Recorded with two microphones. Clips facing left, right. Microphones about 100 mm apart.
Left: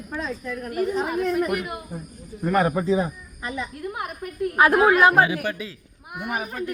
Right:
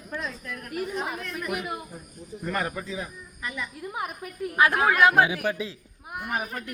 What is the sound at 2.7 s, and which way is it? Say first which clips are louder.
Speech: left 12 dB; 35° left (ahead or behind).